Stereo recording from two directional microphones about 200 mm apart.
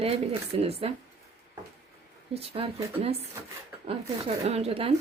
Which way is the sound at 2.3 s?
30° right (ahead or behind).